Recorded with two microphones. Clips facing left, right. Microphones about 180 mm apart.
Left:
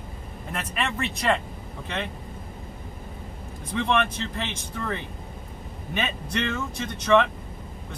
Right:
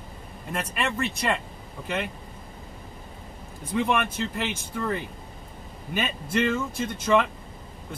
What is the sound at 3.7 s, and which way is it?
Speech, 10° right (ahead or behind).